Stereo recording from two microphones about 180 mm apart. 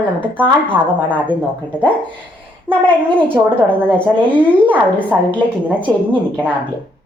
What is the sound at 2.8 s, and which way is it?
Speech, 5° left (ahead or behind).